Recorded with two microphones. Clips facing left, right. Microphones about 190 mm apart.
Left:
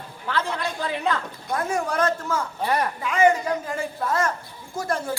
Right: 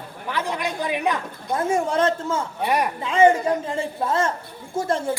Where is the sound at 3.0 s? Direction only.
30° right (ahead or behind).